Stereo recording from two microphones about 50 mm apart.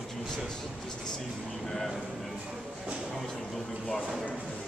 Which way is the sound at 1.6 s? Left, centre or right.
Centre.